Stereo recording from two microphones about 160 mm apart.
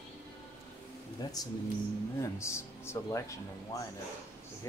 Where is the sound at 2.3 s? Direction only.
15° left (ahead or behind).